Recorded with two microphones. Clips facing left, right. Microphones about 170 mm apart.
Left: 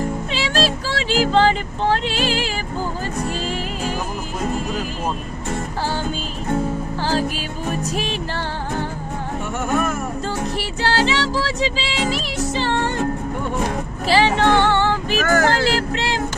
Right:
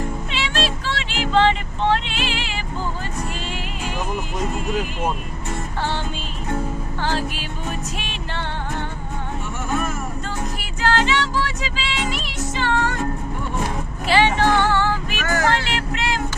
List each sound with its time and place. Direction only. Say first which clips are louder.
0.3 s music: left 4 dB; 35° left (ahead or behind)
7.0 s music: left 3 dB; 40° left (ahead or behind)
10.2 s music: left 5 dB; 35° left (ahead or behind)
14.1 s music: left 1 dB; 35° left (ahead or behind)